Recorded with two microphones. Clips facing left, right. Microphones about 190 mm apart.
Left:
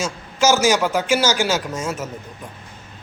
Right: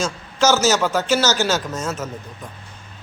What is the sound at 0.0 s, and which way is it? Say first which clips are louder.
A man's voice: even; 10° left (ahead or behind).